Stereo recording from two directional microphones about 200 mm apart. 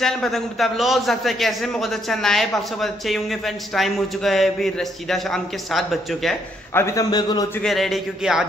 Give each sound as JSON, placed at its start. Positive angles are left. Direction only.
{"t": 0.0, "sound": "a man's voice", "side_deg": 0}
{"t": 6.7, "sound": "a man's voice", "side_deg": 15}
{"t": 7.6, "sound": "a man's voice", "side_deg": 0}